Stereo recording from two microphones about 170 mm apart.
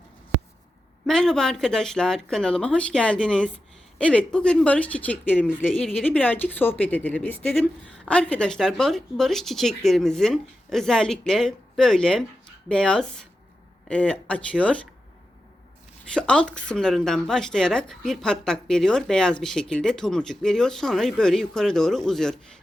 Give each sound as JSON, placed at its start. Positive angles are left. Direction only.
{"t": 1.0, "sound": "a woman's voice", "side_deg": 5}
{"t": 16.1, "sound": "a woman's voice", "side_deg": 5}